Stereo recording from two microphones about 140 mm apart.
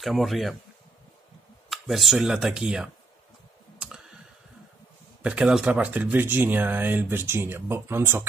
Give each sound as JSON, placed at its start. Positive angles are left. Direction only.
{"t": 0.0, "sound": "speech", "side_deg": 0}
{"t": 1.7, "sound": "speech", "side_deg": 0}
{"t": 3.8, "sound": "clicking", "side_deg": -5}
{"t": 5.2, "sound": "speech", "side_deg": -5}